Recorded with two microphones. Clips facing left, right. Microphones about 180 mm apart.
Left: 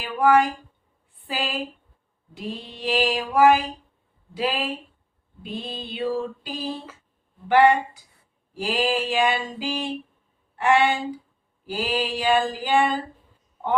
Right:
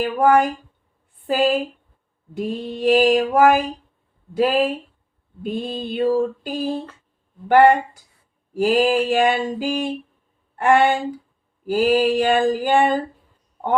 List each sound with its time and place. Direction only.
0.0 s mantra: 50° right (ahead or behind)
10.5 s speech: 50° right (ahead or behind)
11.6 s mantra: 50° right (ahead or behind)